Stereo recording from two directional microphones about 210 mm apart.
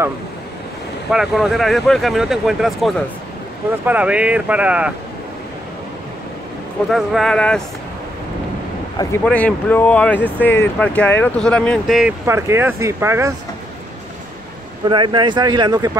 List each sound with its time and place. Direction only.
1.1 s speech: centre (ahead or behind)
6.9 s speech: centre (ahead or behind)
9.2 s speech: 5° left (ahead or behind)
12.3 s speech: 10° right (ahead or behind)
14.9 s speech: 20° right (ahead or behind)